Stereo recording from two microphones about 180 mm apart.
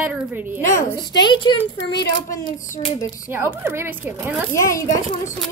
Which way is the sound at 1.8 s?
70° left (ahead or behind).